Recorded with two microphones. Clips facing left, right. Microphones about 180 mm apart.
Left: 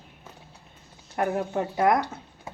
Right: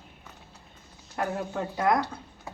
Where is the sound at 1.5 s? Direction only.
25° left (ahead or behind).